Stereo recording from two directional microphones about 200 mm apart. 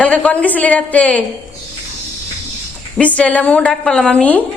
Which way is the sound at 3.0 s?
5° left (ahead or behind).